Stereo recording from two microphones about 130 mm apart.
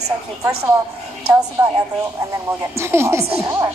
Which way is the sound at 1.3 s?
25° right (ahead or behind).